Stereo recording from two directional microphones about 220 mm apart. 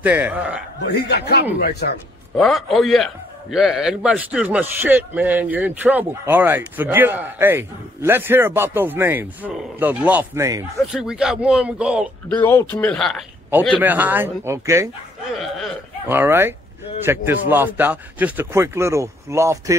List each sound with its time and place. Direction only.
0.0 s a man's voice: 5° right (ahead or behind)
0.8 s speech: 50° left (ahead or behind)
2.3 s a man's voice: centre (ahead or behind)
12.3 s a man's voice: 10° left (ahead or behind); by 14.9 s 15° right (ahead or behind)
15.3 s a man's voice: centre (ahead or behind)